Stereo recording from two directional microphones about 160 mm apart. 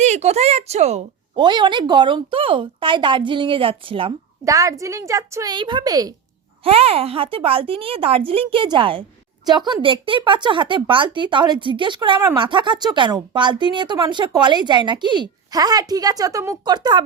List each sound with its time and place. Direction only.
0.0 s speech: 45° right (ahead or behind)
1.4 s speech: 30° right (ahead or behind)
4.4 s speech: 20° right (ahead or behind)
6.7 s speech: 35° right (ahead or behind)